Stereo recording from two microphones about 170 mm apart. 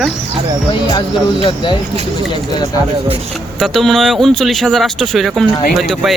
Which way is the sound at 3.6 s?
Centre (ahead or behind).